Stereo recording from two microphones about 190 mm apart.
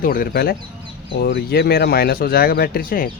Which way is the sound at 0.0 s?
50° left (ahead or behind).